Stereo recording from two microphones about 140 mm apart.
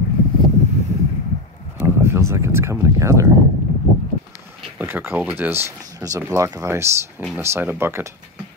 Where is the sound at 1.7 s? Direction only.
15° right (ahead or behind).